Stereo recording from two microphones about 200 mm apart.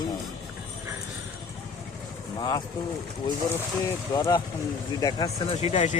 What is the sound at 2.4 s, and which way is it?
Speech, 20° left (ahead or behind).